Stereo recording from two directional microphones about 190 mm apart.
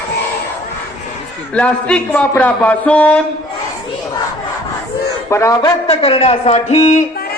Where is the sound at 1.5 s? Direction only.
5° left (ahead or behind).